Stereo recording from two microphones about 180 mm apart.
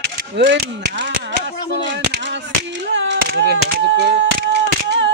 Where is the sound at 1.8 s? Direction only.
80° right.